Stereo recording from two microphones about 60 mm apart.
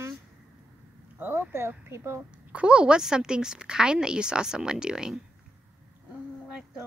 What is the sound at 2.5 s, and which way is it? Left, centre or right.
A woman's voice, centre.